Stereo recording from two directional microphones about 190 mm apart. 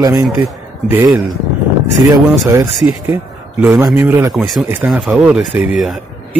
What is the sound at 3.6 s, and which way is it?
Speech, 10° right (ahead or behind).